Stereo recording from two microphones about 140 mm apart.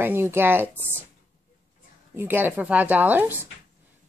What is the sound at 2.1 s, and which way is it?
Speech, 15° right (ahead or behind).